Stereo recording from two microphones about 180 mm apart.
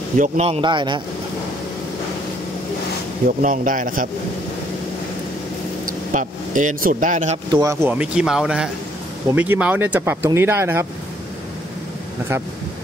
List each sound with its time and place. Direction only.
0.2 s a man's voice: 35° right (ahead or behind)
3.3 s a man's voice: 50° right (ahead or behind)
5.9 s speech: 45° right (ahead or behind)
7.5 s speech: 15° right (ahead or behind)